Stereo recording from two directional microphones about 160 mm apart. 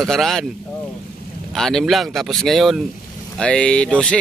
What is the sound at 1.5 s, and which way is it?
Speech, centre (ahead or behind).